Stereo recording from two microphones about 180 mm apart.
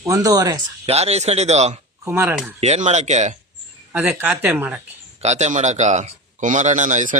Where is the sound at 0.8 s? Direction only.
35° right (ahead or behind).